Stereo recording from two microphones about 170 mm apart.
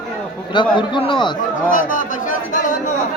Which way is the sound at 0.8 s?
30° left (ahead or behind).